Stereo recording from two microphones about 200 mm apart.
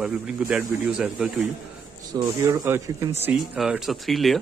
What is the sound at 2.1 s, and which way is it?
Speech, 15° right (ahead or behind).